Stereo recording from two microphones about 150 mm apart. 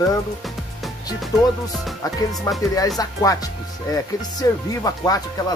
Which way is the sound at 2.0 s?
25° left (ahead or behind).